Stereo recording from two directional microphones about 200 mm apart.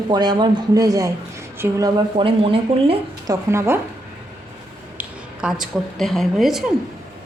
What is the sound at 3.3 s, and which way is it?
Speech, 15° right (ahead or behind).